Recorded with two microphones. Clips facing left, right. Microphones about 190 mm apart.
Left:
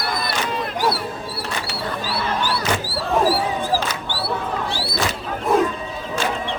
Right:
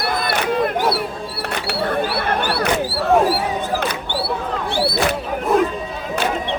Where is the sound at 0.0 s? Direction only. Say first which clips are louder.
Right 4 dB; 60° right (ahead or behind).